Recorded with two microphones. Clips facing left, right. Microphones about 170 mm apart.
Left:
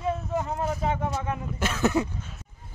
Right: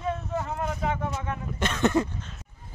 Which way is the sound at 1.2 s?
5° left (ahead or behind).